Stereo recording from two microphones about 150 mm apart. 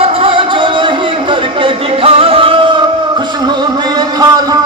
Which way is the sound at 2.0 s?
40° right (ahead or behind).